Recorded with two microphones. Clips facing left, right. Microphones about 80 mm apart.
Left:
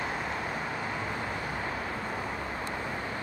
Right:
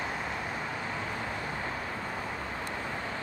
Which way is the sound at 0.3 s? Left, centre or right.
Centre.